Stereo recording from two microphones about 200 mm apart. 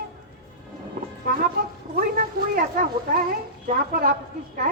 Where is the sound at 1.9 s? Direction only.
45° right (ahead or behind).